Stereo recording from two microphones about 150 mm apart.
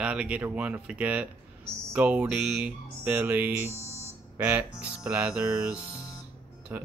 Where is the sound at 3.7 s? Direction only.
45° left (ahead or behind).